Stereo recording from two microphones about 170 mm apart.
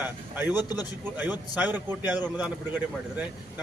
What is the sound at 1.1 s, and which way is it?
Speech, 10° right (ahead or behind).